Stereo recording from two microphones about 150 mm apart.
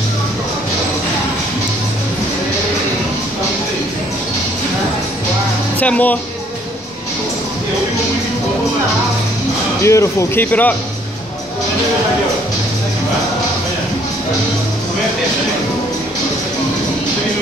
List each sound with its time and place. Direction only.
5.8 s speech: 10° left (ahead or behind)
9.8 s speech: 20° left (ahead or behind)